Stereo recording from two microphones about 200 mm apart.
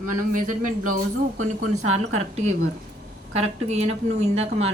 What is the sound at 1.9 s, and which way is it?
Speech, 30° right (ahead or behind).